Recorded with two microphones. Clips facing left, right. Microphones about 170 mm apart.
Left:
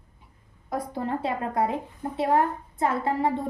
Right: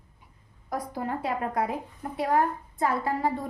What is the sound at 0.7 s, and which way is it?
A woman's voice, 30° left (ahead or behind).